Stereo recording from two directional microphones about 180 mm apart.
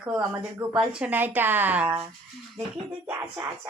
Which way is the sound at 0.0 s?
5° right (ahead or behind).